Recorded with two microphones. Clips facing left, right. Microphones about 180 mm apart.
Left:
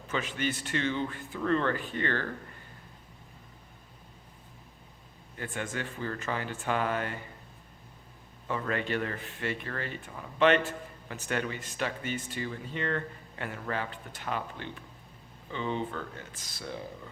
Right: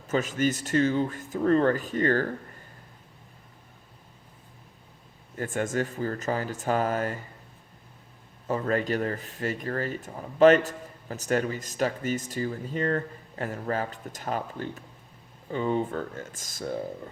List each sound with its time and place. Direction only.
0.1 s speech: 40° right (ahead or behind)
5.4 s speech: 45° right (ahead or behind)
8.4 s speech: 40° right (ahead or behind)